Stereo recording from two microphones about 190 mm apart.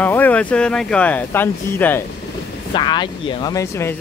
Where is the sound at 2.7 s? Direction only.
25° left (ahead or behind).